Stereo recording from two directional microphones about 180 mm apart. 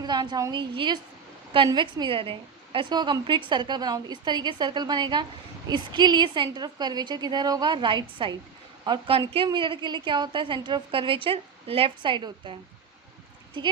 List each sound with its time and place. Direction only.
0.0 s a woman's voice: 25° right (ahead or behind)